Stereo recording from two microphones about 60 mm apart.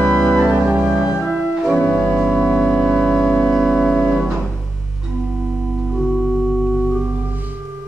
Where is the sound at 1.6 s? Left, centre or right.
Centre.